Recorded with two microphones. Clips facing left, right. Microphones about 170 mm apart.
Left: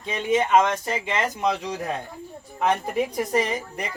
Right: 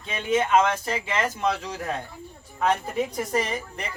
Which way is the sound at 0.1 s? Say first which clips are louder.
Left 2 dB; 15° left (ahead or behind).